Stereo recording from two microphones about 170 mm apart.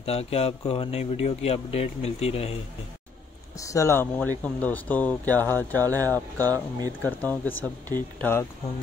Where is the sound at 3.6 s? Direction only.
20° left (ahead or behind).